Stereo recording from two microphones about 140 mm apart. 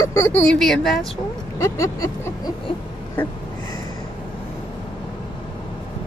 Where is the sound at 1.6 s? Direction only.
20° left (ahead or behind).